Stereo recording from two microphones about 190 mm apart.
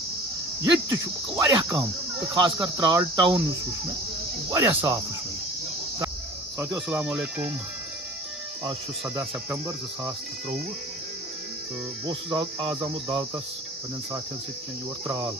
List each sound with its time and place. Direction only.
0.8 s cricket: 20° right (ahead or behind)
4.5 s speech: 20° right (ahead or behind)
6.6 s speech: 10° right (ahead or behind)
9.1 s speech: 15° right (ahead or behind)
12.1 s cricket: 25° right (ahead or behind)
15.0 s cricket: 25° right (ahead or behind)